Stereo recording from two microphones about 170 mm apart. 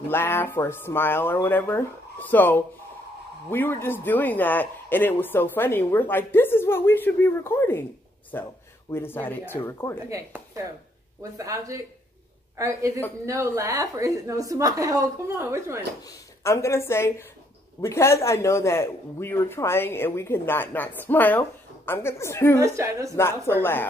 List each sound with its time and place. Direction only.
0.1 s a man's voice: 15° left (ahead or behind)
10.0 s a woman's voice: 20° right (ahead or behind)
16.4 s a man's voice: 15° left (ahead or behind)
22.6 s a woman's voice: 15° right (ahead or behind)
23.1 s a man's voice: 15° left (ahead or behind)